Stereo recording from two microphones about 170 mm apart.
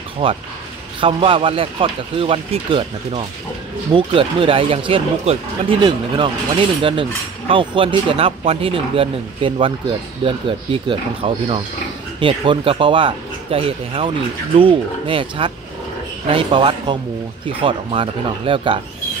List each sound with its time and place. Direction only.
0.2 s speech: 30° right (ahead or behind)